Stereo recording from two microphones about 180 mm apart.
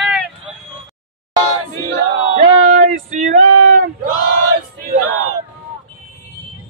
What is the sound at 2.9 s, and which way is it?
Male singing, 40° right (ahead or behind).